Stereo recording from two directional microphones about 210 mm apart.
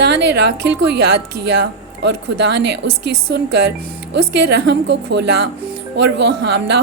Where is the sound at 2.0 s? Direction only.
55° right (ahead or behind).